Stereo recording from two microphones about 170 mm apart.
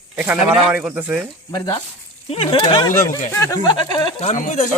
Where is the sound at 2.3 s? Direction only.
30° left (ahead or behind).